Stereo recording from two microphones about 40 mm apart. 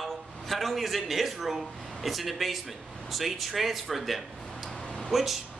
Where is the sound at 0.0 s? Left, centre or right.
Centre.